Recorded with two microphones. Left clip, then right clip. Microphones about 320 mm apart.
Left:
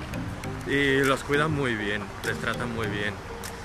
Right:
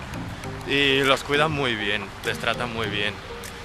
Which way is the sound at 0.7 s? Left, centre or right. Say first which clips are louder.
Right 3 dB; centre.